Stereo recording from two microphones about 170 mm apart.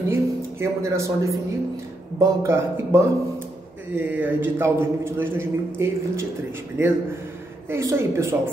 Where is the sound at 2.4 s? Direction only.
15° right (ahead or behind).